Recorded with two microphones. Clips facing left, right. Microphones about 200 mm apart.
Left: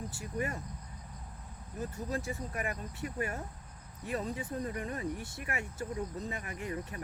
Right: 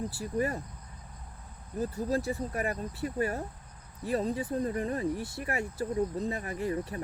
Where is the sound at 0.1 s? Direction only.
35° right (ahead or behind).